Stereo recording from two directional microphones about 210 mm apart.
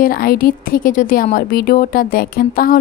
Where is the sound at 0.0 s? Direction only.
45° left (ahead or behind).